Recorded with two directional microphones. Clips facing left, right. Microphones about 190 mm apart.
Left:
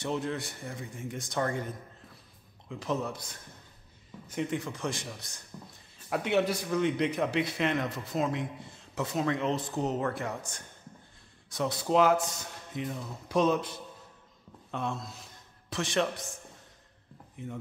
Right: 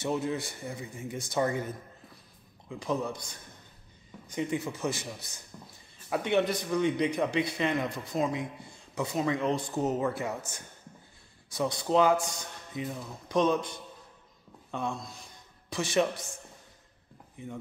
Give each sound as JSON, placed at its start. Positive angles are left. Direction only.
{"t": 0.0, "sound": "a man's voice", "side_deg": -5}
{"t": 2.7, "sound": "a man's voice", "side_deg": 0}